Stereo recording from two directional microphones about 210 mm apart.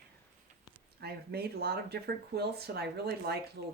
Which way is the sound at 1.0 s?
50° right (ahead or behind).